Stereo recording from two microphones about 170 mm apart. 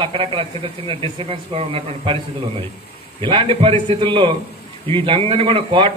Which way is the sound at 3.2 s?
30° right (ahead or behind).